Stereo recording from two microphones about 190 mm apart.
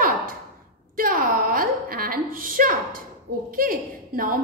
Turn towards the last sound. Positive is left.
turn(degrees=-50)  # may be behind; listen again after turning